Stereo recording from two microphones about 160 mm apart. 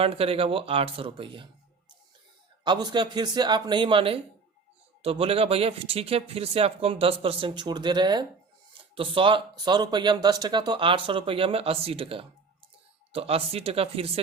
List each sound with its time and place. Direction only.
0.0 s speech: 35° right (ahead or behind)
2.6 s speech: 30° right (ahead or behind)